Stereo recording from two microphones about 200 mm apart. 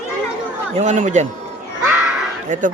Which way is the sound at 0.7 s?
35° right (ahead or behind).